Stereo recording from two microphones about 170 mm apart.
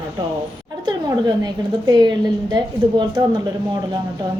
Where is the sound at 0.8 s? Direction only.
25° right (ahead or behind).